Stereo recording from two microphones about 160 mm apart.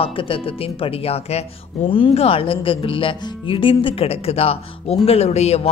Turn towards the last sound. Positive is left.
turn(degrees=40)  # may be behind; listen again after turning